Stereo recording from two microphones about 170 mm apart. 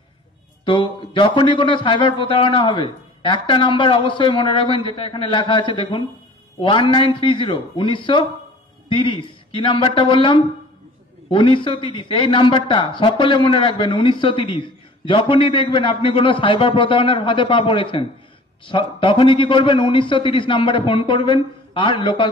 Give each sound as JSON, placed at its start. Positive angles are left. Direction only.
{"t": 0.7, "sound": "a man's voice", "side_deg": 30}